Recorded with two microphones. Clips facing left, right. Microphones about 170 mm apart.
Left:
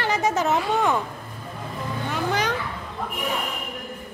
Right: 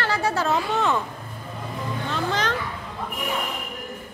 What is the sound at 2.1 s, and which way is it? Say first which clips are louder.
Music: left 1 dB; 10° left (ahead or behind).